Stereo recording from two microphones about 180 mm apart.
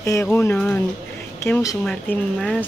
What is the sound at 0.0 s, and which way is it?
Speech, 15° left (ahead or behind).